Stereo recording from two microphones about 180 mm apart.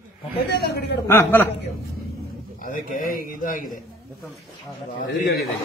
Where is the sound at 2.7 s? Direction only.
50° left (ahead or behind).